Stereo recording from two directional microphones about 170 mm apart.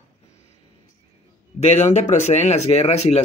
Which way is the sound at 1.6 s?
40° left (ahead or behind).